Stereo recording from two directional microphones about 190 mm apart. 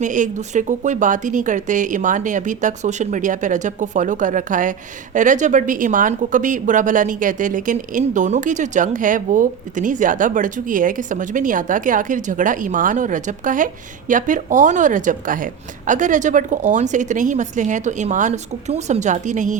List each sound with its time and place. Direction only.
0.0 s a woman's voice: 40° right (ahead or behind)